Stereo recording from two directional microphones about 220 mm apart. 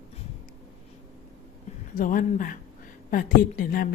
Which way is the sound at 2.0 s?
35° left (ahead or behind).